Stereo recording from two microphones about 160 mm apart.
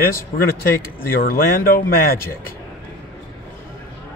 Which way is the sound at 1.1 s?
65° left (ahead or behind).